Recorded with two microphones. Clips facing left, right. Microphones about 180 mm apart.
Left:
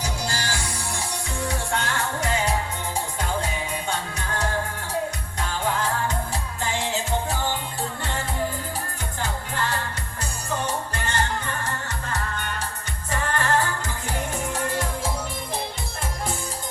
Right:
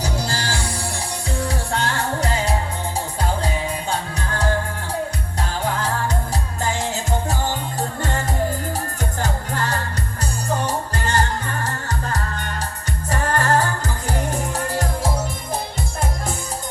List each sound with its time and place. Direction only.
0.0 s music: 35° right (ahead or behind)
6.6 s music: 40° right (ahead or behind)